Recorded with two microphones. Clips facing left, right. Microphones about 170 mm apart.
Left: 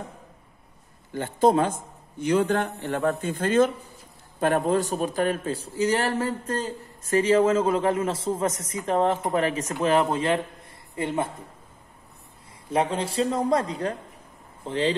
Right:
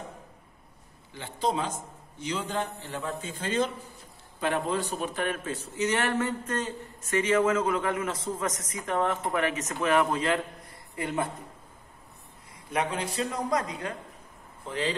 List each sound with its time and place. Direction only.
1.1 s a man's voice: 50° left (ahead or behind); by 11.2 s 25° left (ahead or behind)
12.7 s a man's voice: 30° left (ahead or behind)